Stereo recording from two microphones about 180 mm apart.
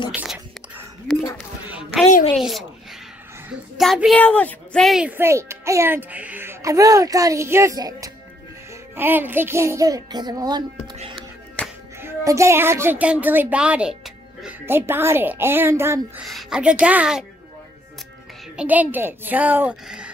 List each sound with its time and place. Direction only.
0.1 s whispering: 5° right (ahead or behind)
1.7 s a sound: 5° right (ahead or behind)
2.3 s a woman's voice: centre (ahead or behind)
3.7 s speech: centre (ahead or behind); by 11.0 s 20° right (ahead or behind)
11.6 s music: 5° left (ahead or behind)
12.0 s speech: 15° right (ahead or behind)
16.3 s a woman's voice: centre (ahead or behind)
18.6 s speech: 10° right (ahead or behind)